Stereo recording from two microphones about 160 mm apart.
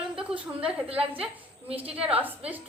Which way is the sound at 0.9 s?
35° right (ahead or behind).